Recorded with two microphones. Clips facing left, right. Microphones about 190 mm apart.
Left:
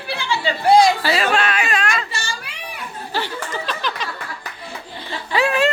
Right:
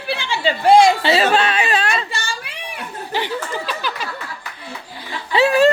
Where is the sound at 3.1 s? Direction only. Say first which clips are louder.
Right 2 dB; 15° right (ahead or behind).